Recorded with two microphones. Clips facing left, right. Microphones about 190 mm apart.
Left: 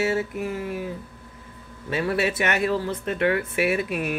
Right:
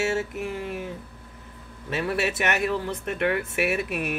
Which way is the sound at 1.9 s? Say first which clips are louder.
Left 2 dB; centre (ahead or behind).